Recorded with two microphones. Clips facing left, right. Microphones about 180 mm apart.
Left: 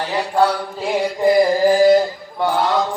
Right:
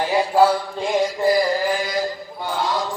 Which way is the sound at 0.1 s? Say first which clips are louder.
Right 1 dB; 5° right (ahead or behind).